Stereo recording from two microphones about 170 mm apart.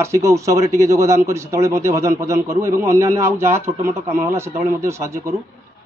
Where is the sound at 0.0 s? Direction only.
15° right (ahead or behind).